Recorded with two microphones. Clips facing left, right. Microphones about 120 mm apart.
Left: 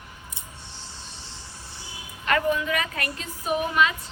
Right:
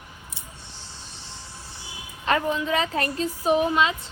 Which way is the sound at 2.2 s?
25° right (ahead or behind).